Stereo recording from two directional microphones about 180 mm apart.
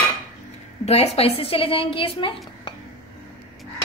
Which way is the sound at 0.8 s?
35° left (ahead or behind).